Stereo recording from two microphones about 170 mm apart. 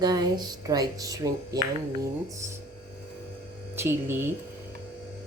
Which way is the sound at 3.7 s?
15° right (ahead or behind).